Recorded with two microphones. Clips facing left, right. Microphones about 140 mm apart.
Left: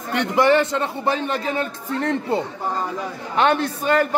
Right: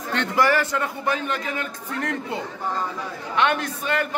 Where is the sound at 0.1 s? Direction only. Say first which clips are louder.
Left 4 dB; 20° left (ahead or behind).